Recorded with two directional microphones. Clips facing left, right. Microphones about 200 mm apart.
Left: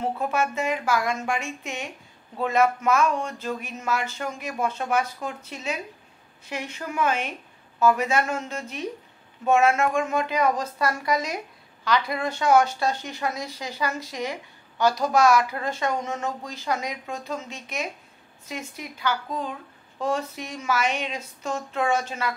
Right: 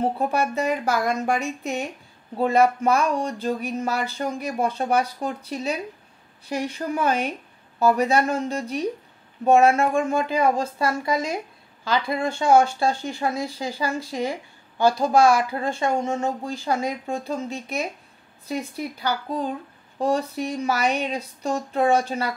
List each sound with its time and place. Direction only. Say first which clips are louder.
0.0 s speech: right 3 dB; 35° right (ahead or behind)